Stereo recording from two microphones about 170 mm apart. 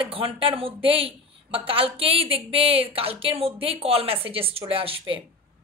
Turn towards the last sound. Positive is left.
turn(degrees=-35)  # may be behind; listen again after turning